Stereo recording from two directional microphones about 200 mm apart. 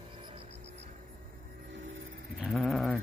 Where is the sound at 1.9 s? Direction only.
75° right (ahead or behind).